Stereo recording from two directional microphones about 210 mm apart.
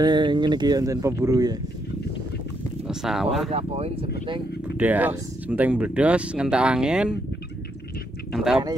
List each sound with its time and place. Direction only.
0.0 s speech: 20° right (ahead or behind)
2.9 s speech: centre (ahead or behind)
3.4 s speech: 30° right (ahead or behind)
4.7 s speech: 5° right (ahead or behind)
8.3 s speech: centre (ahead or behind)